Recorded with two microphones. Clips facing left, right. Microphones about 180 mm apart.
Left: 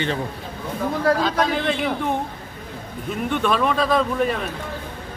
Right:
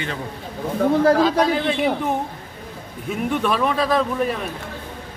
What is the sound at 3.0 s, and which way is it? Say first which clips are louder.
Speech: right 1 dB; 5° right (ahead or behind).